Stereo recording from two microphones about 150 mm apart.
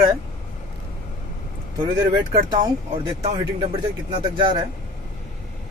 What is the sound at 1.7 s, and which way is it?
Speech, 30° right (ahead or behind).